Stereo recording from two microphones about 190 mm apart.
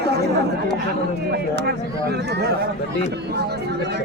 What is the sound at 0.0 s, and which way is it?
Chatter, 60° right (ahead or behind).